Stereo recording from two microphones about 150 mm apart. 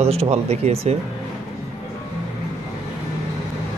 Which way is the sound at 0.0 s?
45° right (ahead or behind).